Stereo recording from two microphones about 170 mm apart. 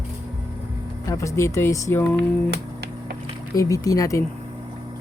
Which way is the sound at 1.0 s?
20° left (ahead or behind).